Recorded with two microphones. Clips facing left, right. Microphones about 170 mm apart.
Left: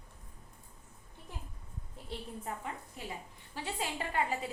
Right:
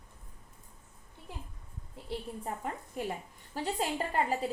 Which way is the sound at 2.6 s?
45° right (ahead or behind).